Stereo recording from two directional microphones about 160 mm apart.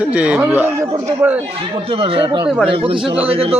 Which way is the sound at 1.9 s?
35° right (ahead or behind).